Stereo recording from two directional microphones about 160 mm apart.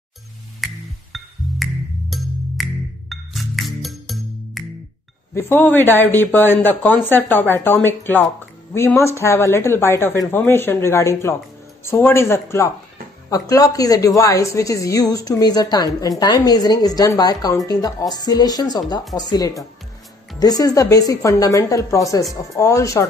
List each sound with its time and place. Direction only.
0.6 s music: centre (ahead or behind)
5.3 s a woman's voice: 15° left (ahead or behind)